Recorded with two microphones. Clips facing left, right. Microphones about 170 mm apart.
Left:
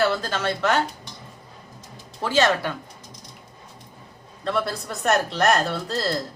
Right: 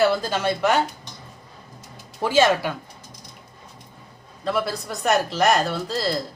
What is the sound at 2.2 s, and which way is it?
Speech, 10° right (ahead or behind).